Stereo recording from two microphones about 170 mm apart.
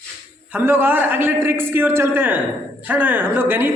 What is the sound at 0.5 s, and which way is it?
A man's voice, 15° right (ahead or behind).